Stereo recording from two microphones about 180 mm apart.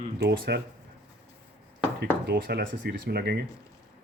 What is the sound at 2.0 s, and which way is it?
Speech, 60° right (ahead or behind).